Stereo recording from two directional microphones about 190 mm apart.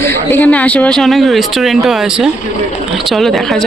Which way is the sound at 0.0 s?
10° left (ahead or behind).